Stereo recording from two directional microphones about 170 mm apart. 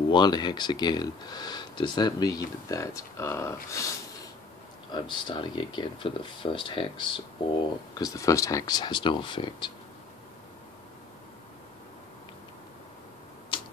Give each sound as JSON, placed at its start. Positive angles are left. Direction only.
{"t": 0.1, "sound": "speech", "side_deg": 25}
{"t": 4.9, "sound": "speech", "side_deg": 25}
{"t": 13.5, "sound": "tick-tock", "side_deg": 30}